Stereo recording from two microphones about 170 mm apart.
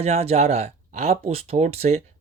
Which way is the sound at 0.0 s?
40° right (ahead or behind).